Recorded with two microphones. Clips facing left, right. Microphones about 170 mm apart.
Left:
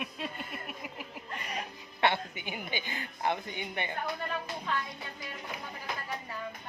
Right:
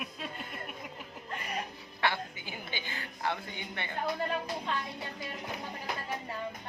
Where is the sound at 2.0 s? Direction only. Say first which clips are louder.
Left 3 dB; 20° left (ahead or behind).